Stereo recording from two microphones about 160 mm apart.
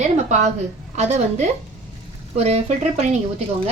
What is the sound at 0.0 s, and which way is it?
A woman's voice, 45° right (ahead or behind).